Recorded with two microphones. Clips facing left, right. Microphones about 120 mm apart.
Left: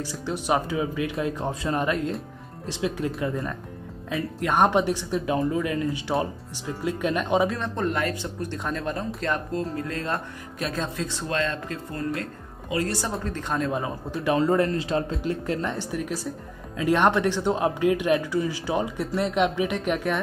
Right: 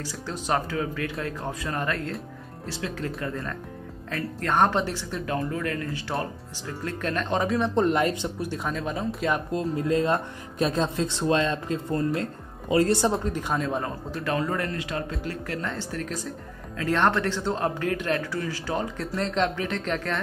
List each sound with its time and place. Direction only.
0.0 s speech: 15° left (ahead or behind)
1.4 s speech: 25° left (ahead or behind)
4.1 s speech: 5° left (ahead or behind)
4.6 s speech: 15° left (ahead or behind)
7.4 s speech: 10° right (ahead or behind)
7.7 s speech: 20° right (ahead or behind)
8.4 s speech: 5° right (ahead or behind)
9.5 s speech: 20° right (ahead or behind)
13.2 s speech: 10° right (ahead or behind)
14.2 s speech: 20° left (ahead or behind)